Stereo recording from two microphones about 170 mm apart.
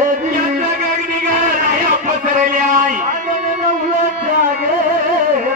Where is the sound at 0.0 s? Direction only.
50° right (ahead or behind).